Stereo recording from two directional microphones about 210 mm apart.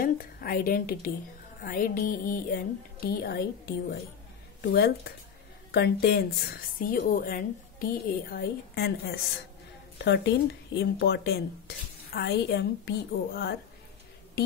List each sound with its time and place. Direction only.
0.0 s a woman's voice: 45° left (ahead or behind)
4.6 s speech: 50° left (ahead or behind)